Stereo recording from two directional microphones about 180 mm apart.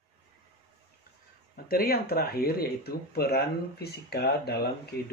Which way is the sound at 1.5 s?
55° left (ahead or behind).